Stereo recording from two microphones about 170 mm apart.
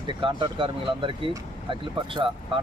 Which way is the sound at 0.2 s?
30° right (ahead or behind).